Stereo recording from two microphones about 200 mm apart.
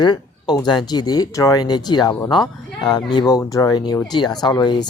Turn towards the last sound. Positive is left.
turn(degrees=20)  # may be behind; listen again after turning